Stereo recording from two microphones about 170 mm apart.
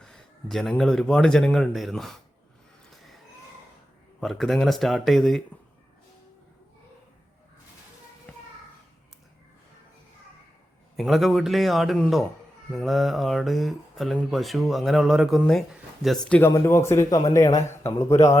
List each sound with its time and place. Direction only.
0.0 s speech: 5° left (ahead or behind)
2.9 s a sound: centre (ahead or behind)
4.2 s speech: centre (ahead or behind)
10.9 s speech: centre (ahead or behind)
16.5 s speech: 15° left (ahead or behind)